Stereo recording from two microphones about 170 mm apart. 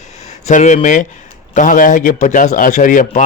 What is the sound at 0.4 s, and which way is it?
A man's voice, 45° left (ahead or behind).